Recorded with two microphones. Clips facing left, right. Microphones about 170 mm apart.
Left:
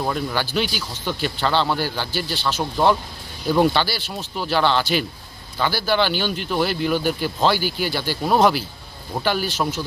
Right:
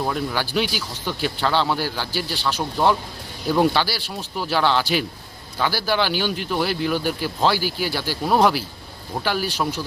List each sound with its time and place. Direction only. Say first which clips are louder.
0.0 s speech: even; centre (ahead or behind)
2.6 s speech: left 2 dB; 5° left (ahead or behind)